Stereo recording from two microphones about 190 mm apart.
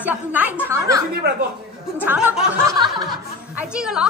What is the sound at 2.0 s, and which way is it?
Speech, 5° right (ahead or behind).